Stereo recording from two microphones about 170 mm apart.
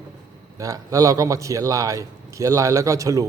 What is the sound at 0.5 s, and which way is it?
A man's voice, 20° right (ahead or behind).